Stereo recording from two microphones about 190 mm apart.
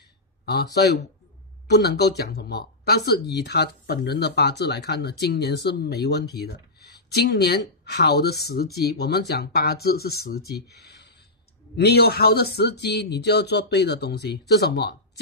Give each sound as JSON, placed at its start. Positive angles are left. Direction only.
{"t": 0.7, "sound": "speech", "side_deg": 60}